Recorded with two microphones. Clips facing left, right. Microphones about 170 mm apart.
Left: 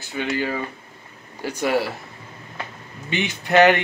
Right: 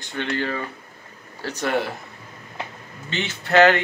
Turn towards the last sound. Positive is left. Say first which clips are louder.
# left 1 dB
turn(degrees=15)  # may be behind; listen again after turning